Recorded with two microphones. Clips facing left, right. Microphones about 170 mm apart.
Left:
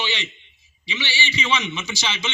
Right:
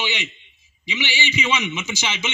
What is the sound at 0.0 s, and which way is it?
A man's voice, 15° right (ahead or behind).